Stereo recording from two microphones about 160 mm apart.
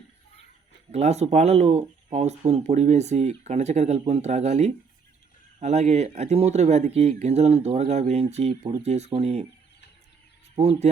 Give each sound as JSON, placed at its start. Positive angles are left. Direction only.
{"t": 0.9, "sound": "speech", "side_deg": -40}
{"t": 10.5, "sound": "speech", "side_deg": -40}